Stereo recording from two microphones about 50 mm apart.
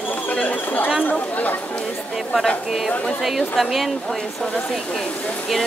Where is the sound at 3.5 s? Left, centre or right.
Centre.